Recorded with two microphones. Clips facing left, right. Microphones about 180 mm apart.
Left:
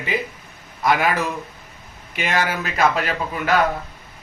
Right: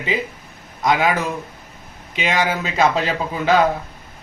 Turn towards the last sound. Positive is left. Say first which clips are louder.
# right 3 dB
turn(degrees=-25)  # may be behind; listen again after turning